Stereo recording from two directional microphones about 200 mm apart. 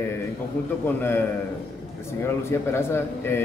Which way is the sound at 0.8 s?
10° left (ahead or behind).